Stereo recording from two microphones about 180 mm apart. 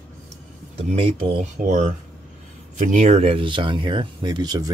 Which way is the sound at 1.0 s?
30° right (ahead or behind).